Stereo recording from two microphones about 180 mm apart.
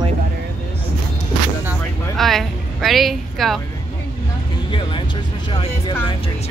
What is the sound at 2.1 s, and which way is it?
Speech, centre (ahead or behind).